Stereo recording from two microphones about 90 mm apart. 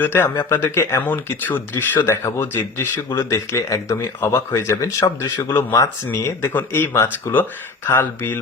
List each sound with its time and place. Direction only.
0.0 s speech: 25° left (ahead or behind)
1.0 s speech: 20° left (ahead or behind); by 5.5 s 40° left (ahead or behind)
6.1 s speech: 25° left (ahead or behind)